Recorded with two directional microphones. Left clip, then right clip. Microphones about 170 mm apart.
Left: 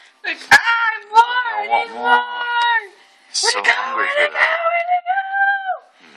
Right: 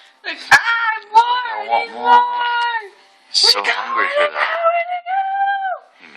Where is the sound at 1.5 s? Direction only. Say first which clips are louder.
Even; centre (ahead or behind).